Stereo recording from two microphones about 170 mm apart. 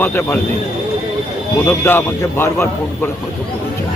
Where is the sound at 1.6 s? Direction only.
15° left (ahead or behind).